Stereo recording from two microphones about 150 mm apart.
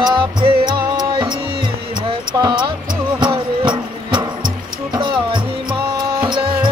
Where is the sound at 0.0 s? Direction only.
25° right (ahead or behind).